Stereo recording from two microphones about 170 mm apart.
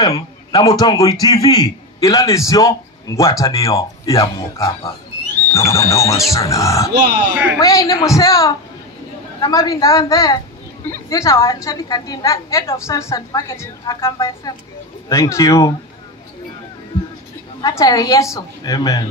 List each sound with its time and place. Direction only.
0.0 s a man's voice: 20° left (ahead or behind)
17.6 s a man's voice: 20° left (ahead or behind)